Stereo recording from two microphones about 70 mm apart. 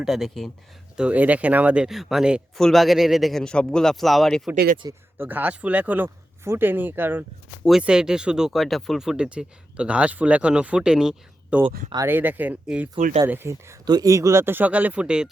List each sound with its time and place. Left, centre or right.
0.0 s a man's voice: centre
0.9 s speech: centre
1.9 s a man's voice: centre
3.4 s speech: centre
5.1 s speech: right
6.4 s speech: right
7.8 s speech: centre
9.0 s speech: centre; by 13.5 s right
13.8 s speech: right
14.1 s speech: right
14.4 s speech: right